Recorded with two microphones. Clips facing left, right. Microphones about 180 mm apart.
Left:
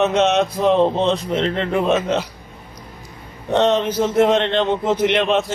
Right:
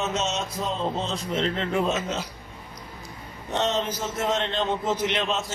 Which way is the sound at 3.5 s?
60° left (ahead or behind).